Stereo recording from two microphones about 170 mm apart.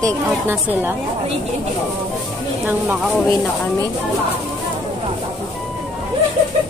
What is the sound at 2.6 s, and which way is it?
Speech, 10° right (ahead or behind).